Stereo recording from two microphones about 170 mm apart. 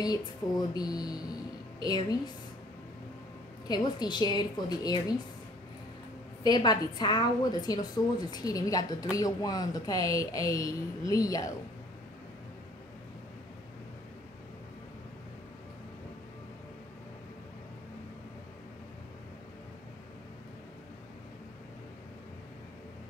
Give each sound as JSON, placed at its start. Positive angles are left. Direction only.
{"t": 0.0, "sound": "a woman's voice", "side_deg": 25}
{"t": 3.6, "sound": "a woman's voice", "side_deg": 25}
{"t": 6.4, "sound": "a woman's voice", "side_deg": 25}